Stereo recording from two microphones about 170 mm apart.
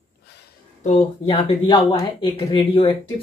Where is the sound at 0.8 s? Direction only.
40° left (ahead or behind).